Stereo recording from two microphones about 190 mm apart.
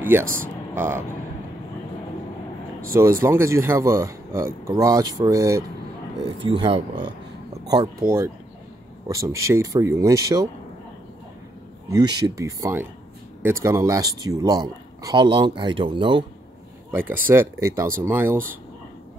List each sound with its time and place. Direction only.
0.0 s speech: 10° right (ahead or behind)
3.0 s speech: 15° right (ahead or behind)
6.2 s speech: 25° right (ahead or behind)
9.3 s speech: 15° right (ahead or behind)
11.9 s speech: 20° right (ahead or behind)
16.9 s speech: 10° right (ahead or behind)